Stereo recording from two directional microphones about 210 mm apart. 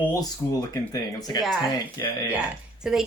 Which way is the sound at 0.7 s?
20° left (ahead or behind).